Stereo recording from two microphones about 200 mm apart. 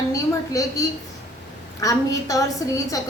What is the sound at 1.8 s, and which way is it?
Speech, 15° left (ahead or behind).